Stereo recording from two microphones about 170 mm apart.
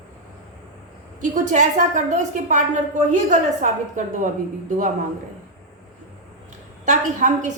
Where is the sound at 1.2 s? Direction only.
45° right (ahead or behind).